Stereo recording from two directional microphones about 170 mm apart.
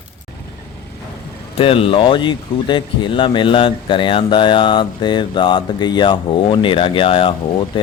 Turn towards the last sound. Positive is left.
turn(degrees=30)  # may be behind; listen again after turning